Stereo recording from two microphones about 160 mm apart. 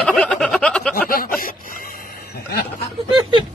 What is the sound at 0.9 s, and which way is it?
Speech, 65° left (ahead or behind).